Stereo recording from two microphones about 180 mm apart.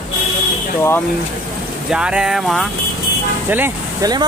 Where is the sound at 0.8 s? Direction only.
15° left (ahead or behind).